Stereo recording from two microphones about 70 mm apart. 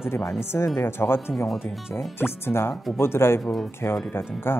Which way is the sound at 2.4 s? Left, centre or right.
Left.